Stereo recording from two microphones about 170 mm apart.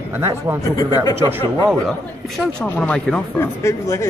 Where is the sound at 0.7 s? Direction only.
20° left (ahead or behind).